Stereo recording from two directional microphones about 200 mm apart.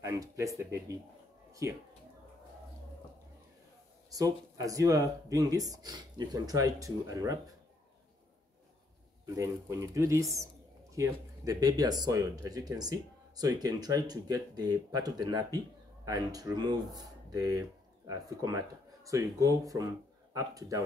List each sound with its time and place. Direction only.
0.0 s speech: 15° right (ahead or behind)
4.1 s speech: 15° right (ahead or behind)
9.2 s speech: 15° right (ahead or behind)